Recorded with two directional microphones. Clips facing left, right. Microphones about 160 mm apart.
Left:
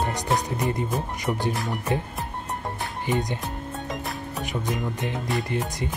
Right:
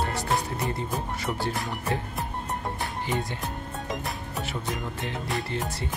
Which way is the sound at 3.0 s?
20° left (ahead or behind).